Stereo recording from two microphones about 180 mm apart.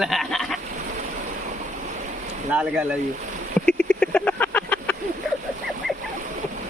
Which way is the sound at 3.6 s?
5° left (ahead or behind).